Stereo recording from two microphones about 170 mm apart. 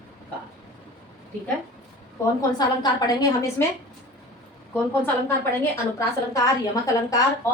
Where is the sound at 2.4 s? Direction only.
25° left (ahead or behind).